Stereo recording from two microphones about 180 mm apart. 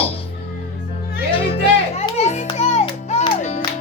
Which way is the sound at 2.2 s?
40° left (ahead or behind).